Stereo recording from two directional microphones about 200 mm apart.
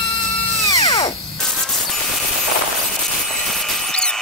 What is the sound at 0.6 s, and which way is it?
Drill, 15° left (ahead or behind).